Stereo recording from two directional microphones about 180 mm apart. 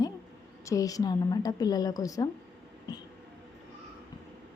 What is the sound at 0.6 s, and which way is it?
A woman's voice, 20° left (ahead or behind).